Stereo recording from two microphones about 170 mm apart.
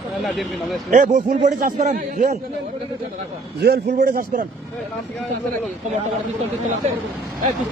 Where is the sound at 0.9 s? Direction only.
45° right (ahead or behind).